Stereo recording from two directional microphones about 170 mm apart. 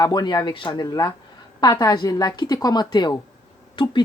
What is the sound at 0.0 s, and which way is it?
Speech, 25° left (ahead or behind).